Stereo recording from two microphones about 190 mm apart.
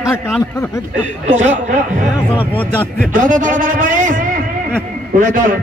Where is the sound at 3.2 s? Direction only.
40° right (ahead or behind).